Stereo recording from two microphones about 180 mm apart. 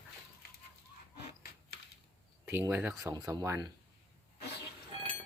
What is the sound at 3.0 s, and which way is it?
Speech, 20° right (ahead or behind).